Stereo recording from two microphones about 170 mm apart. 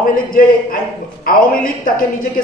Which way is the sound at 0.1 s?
60° left (ahead or behind).